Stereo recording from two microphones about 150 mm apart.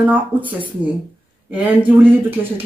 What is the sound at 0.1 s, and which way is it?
Speech, 10° right (ahead or behind).